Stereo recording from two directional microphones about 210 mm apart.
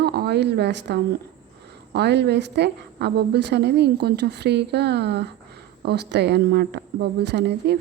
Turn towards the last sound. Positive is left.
turn(degrees=-55)  # may be behind; listen again after turning